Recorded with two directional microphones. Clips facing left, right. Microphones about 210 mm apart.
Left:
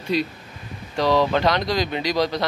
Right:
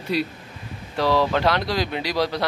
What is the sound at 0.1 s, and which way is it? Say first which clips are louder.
Speech: left 1 dB; 10° right (ahead or behind).